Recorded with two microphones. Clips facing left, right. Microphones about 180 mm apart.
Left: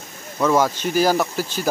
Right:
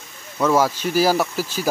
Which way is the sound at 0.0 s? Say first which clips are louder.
Left 4 dB; 45° left (ahead or behind).